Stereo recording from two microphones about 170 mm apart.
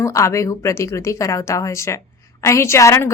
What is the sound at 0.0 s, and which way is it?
A woman's voice, 15° left (ahead or behind).